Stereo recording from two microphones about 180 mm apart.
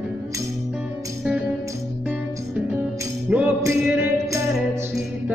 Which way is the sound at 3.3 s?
15° right (ahead or behind).